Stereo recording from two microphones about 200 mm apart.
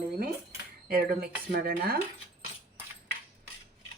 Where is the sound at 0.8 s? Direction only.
50° right (ahead or behind).